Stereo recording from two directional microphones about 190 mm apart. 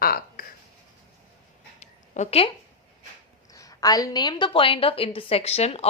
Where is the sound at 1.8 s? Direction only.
35° left (ahead or behind).